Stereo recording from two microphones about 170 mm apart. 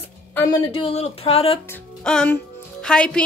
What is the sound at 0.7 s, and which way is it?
Speech, 35° left (ahead or behind).